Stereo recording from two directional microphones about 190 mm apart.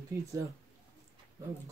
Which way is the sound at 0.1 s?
15° right (ahead or behind).